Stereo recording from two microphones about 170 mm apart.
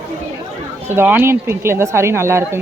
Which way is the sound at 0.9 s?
10° right (ahead or behind).